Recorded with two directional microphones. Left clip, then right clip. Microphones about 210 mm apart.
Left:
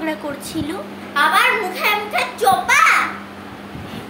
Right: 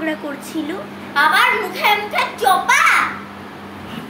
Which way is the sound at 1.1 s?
25° left (ahead or behind).